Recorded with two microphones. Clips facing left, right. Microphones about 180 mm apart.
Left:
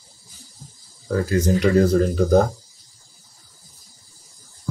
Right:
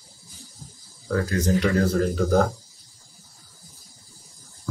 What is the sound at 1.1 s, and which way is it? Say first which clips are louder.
Speech: left 3 dB; 10° left (ahead or behind).